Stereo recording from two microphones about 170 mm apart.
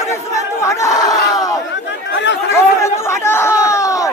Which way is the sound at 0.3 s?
15° left (ahead or behind).